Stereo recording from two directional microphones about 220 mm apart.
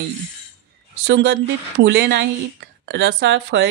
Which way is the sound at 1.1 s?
50° right (ahead or behind).